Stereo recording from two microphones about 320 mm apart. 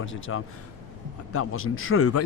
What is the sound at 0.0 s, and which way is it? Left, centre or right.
A man's voice, left.